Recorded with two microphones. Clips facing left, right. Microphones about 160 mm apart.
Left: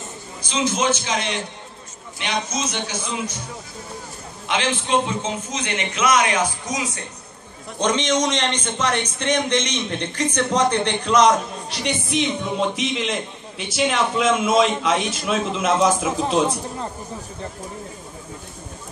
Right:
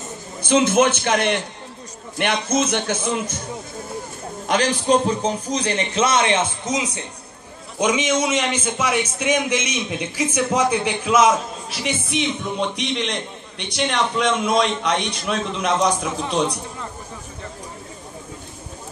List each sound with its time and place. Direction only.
0.4 s speech: 55° right (ahead or behind)
4.5 s a man's voice: 40° right (ahead or behind); by 7.1 s 20° right (ahead or behind)
7.8 s a man's voice: 10° right (ahead or behind)